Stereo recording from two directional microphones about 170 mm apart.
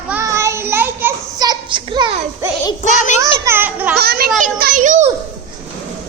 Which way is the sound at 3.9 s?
65° right (ahead or behind).